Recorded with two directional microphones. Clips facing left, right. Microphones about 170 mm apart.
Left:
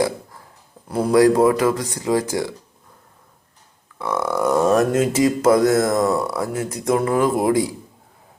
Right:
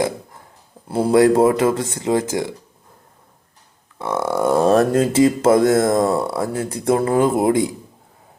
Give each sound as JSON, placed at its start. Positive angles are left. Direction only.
{"t": 0.9, "sound": "speech", "side_deg": -30}
{"t": 3.9, "sound": "speech", "side_deg": -25}